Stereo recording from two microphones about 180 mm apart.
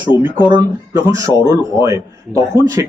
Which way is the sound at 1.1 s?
15° right (ahead or behind).